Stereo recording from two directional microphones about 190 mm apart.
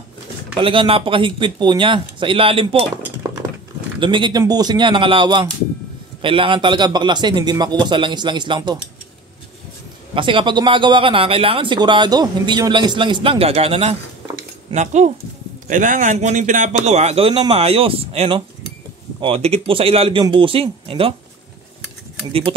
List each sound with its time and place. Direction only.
0.6 s speech: 25° right (ahead or behind)
4.0 s speech: 25° right (ahead or behind)
10.1 s a man's voice: 25° right (ahead or behind)